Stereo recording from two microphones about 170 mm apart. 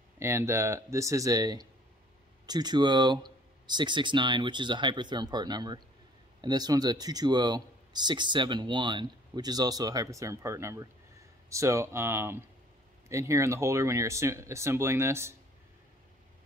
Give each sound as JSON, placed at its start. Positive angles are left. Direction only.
{"t": 0.2, "sound": "speech", "side_deg": -15}